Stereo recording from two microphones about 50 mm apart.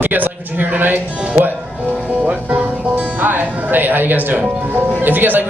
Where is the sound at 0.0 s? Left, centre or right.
Right.